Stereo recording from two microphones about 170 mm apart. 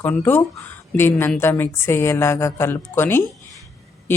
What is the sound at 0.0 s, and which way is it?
A woman's voice, 10° left (ahead or behind).